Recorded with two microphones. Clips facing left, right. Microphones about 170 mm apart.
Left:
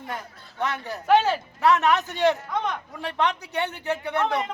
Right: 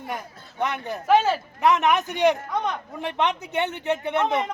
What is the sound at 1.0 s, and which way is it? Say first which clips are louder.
Speech: even; centre (ahead or behind).